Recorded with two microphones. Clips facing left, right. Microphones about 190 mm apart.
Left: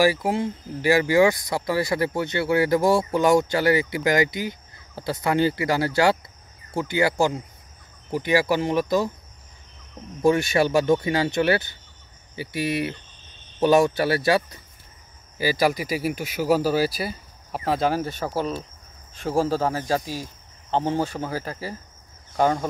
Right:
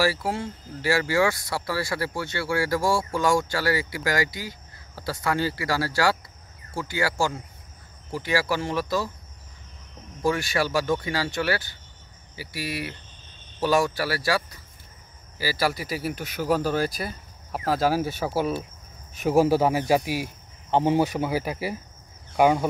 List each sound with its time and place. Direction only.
0.0 s speech: 15° left (ahead or behind)
10.2 s speech: 20° left (ahead or behind); by 22.7 s 10° right (ahead or behind)